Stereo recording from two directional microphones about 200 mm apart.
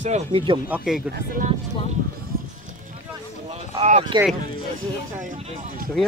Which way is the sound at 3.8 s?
30° right (ahead or behind).